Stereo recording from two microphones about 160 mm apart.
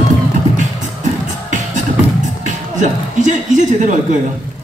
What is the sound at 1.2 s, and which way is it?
Music, 50° right (ahead or behind).